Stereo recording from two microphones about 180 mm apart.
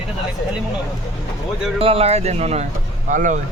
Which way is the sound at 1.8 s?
30° right (ahead or behind).